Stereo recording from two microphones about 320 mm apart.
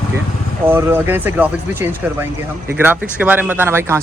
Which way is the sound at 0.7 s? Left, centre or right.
Centre.